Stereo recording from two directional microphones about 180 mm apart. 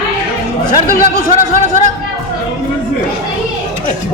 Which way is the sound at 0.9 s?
55° left (ahead or behind).